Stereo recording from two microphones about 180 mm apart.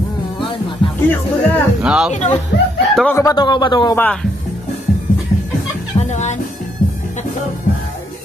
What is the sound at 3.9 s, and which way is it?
Speech, 10° left (ahead or behind).